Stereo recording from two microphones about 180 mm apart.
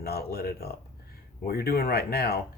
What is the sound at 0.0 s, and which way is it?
Speech, 60° left (ahead or behind).